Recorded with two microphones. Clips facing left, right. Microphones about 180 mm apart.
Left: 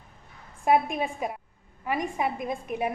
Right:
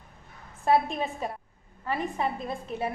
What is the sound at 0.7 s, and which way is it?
A woman's voice, 15° left (ahead or behind).